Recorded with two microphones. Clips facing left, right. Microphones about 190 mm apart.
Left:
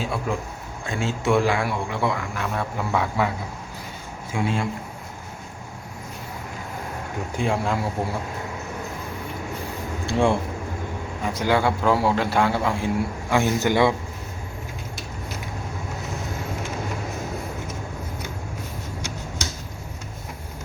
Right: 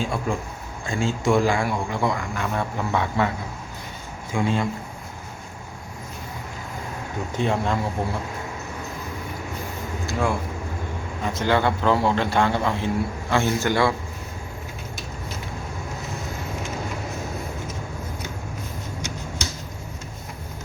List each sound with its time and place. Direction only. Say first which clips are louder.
0.0 s a man's voice: right 1 dB; 5° left (ahead or behind)
4.3 s a man's voice: right 2 dB; 5° left (ahead or behind)
7.3 s a man's voice: right 1 dB; 5° left (ahead or behind)
10.1 s speech: left 4 dB; 30° left (ahead or behind)
11.2 s a man's voice: even; 10° left (ahead or behind)